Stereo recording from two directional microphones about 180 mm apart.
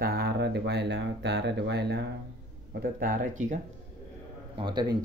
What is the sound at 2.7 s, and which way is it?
Speech, 50° right (ahead or behind).